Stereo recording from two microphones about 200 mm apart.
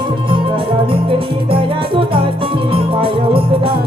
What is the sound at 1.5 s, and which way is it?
Music, 25° right (ahead or behind).